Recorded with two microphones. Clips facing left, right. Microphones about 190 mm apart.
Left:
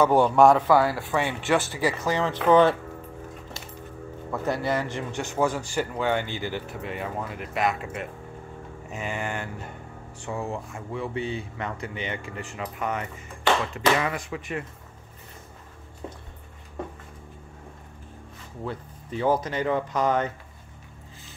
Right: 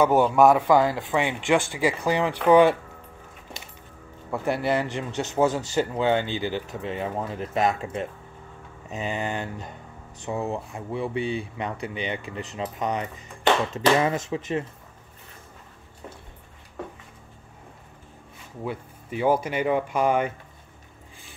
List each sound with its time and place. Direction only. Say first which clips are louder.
0.0 s speech: even; 10° right (ahead or behind)
0.7 s speech: right 1 dB; 20° right (ahead or behind)
3.6 s music: left 3 dB; 15° right (ahead or behind)
4.3 s speech: right 2 dB; 15° right (ahead or behind)
18.6 s speech: right 2 dB; 10° right (ahead or behind)